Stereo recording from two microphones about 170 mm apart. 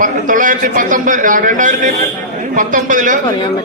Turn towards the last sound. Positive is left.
turn(degrees=-50)  # may be behind; listen again after turning